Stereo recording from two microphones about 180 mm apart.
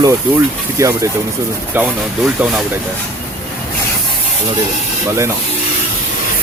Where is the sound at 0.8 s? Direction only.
15° right (ahead or behind).